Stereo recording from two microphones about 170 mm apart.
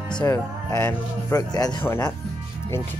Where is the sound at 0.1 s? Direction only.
20° left (ahead or behind).